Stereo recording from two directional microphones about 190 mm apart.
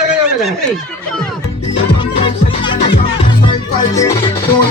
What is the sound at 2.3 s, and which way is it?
Music, 25° left (ahead or behind).